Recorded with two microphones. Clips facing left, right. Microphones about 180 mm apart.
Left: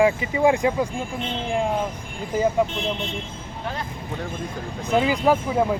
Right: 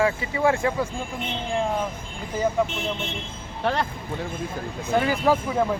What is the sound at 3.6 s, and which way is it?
Speech, 70° right (ahead or behind).